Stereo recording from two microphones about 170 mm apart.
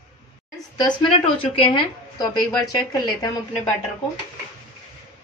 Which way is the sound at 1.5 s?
30° left (ahead or behind).